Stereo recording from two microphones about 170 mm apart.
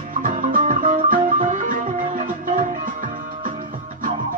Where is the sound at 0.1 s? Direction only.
50° right (ahead or behind).